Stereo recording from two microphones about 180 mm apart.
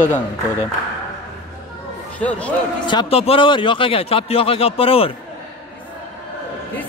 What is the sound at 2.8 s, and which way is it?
A man's voice, 30° left (ahead or behind).